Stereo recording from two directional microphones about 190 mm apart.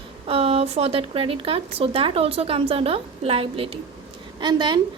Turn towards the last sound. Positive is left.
turn(degrees=-25)  # may be behind; listen again after turning